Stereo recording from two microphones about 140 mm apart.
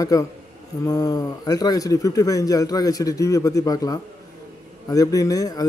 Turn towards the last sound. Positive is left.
turn(degrees=25)  # may be behind; listen again after turning